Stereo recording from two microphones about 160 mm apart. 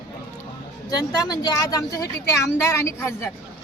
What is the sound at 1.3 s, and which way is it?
A woman's voice, 20° left (ahead or behind).